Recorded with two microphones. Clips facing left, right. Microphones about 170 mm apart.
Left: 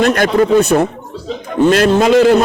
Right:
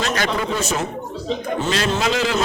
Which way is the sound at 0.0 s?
55° left (ahead or behind).